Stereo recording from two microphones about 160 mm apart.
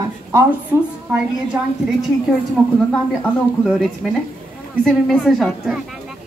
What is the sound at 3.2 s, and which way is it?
Speech, 5° left (ahead or behind).